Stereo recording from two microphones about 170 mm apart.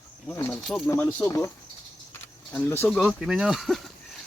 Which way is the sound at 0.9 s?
15° left (ahead or behind).